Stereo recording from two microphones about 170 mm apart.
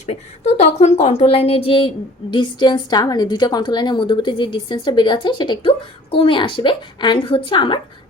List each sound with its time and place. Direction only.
0.0 s a woman's voice: 40° left (ahead or behind)